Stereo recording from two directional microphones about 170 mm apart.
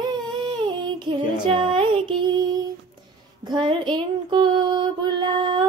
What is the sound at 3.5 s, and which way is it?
Female singing, 25° right (ahead or behind).